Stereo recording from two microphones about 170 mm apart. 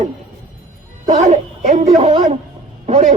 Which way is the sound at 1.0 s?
40° right (ahead or behind).